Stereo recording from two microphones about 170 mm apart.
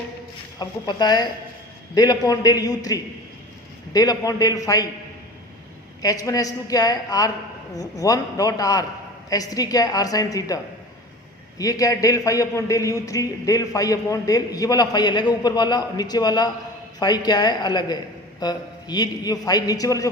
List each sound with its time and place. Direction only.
0.6 s a man's voice: 25° left (ahead or behind)
6.0 s a man's voice: 20° left (ahead or behind)